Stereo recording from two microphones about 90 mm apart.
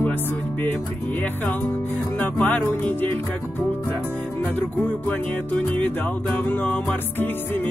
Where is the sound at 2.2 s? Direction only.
15° left (ahead or behind).